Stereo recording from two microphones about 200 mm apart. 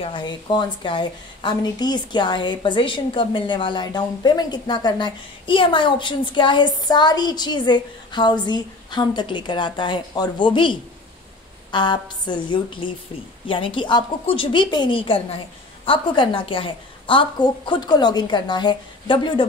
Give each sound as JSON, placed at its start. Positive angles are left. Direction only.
{"t": 0.0, "sound": "speech", "side_deg": 25}